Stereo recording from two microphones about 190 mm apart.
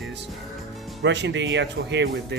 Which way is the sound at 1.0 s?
65° right (ahead or behind).